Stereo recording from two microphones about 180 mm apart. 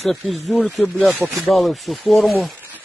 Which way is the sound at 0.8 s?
10° left (ahead or behind).